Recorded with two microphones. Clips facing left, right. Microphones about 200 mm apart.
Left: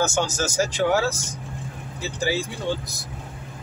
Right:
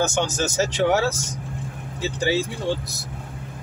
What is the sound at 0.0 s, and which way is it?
Speech, 20° right (ahead or behind).